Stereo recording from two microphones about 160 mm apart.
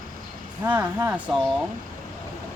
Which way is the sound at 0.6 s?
15° right (ahead or behind).